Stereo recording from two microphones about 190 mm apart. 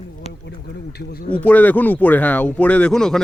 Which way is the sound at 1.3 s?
10° left (ahead or behind).